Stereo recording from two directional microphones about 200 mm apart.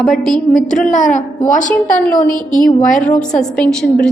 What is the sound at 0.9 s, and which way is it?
A woman's voice, 40° left (ahead or behind).